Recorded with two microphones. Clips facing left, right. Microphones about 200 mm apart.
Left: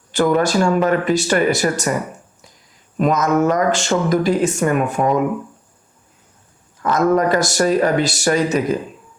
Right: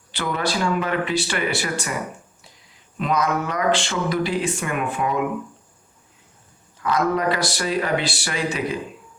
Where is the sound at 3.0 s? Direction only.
45° left (ahead or behind).